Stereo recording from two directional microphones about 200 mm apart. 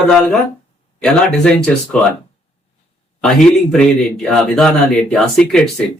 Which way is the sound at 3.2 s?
5° left (ahead or behind).